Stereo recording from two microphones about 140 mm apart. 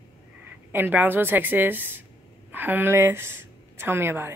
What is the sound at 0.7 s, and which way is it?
A woman's voice, 15° right (ahead or behind).